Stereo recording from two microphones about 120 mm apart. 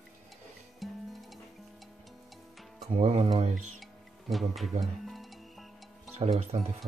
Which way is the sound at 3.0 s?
55° right (ahead or behind).